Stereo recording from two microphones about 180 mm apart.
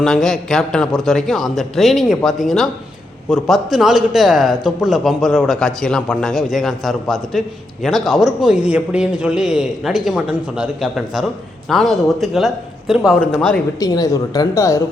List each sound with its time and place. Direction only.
0.0 s a man's voice: centre (ahead or behind)
13.7 s a woman's voice: 20° left (ahead or behind)